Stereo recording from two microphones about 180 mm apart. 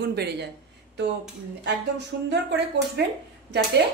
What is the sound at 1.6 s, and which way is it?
A woman's voice, 75° right (ahead or behind).